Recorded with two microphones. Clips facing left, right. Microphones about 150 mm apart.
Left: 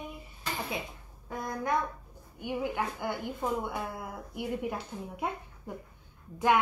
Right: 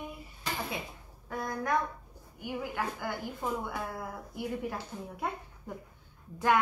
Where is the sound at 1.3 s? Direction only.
20° left (ahead or behind).